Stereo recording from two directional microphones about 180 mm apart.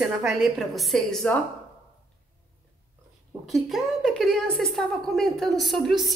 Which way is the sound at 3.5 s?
Centre (ahead or behind).